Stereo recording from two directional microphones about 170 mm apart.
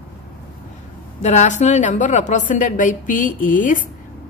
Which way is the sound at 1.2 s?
45° left (ahead or behind).